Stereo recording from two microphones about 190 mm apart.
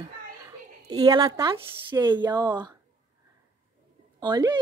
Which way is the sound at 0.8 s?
20° right (ahead or behind).